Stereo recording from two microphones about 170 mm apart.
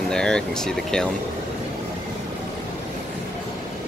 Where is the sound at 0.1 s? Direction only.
5° left (ahead or behind).